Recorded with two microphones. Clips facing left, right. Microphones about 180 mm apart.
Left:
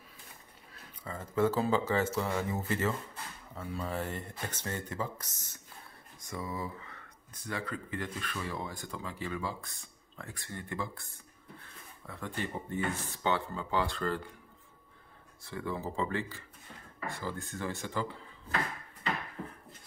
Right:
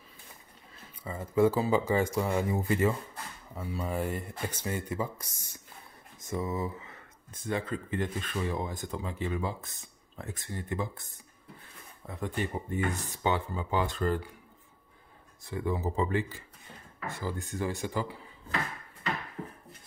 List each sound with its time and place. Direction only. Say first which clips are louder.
0.7 s speech: right 3 dB; 10° right (ahead or behind)
6.2 s speech: right 6 dB; 25° right (ahead or behind)
12.1 s speech: right 4 dB; 15° right (ahead or behind)
15.4 s speech: right 5 dB; 15° right (ahead or behind)